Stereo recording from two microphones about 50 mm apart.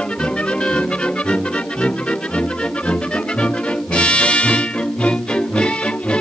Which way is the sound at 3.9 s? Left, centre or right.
Left.